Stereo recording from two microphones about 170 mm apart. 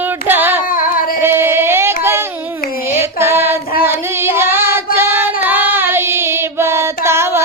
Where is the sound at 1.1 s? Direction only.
15° right (ahead or behind).